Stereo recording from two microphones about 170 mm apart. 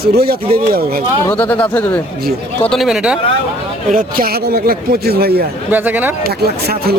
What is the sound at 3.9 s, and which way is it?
Speech, 60° right (ahead or behind).